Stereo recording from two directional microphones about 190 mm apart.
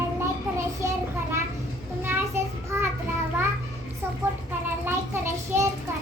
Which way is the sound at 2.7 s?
10° right (ahead or behind).